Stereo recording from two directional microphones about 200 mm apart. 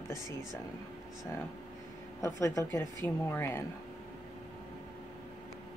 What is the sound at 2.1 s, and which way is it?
A woman's voice, 15° left (ahead or behind).